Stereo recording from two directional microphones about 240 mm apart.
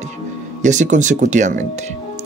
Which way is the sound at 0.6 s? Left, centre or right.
Right.